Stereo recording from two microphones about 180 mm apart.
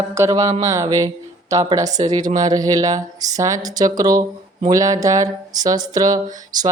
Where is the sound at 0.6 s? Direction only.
20° right (ahead or behind).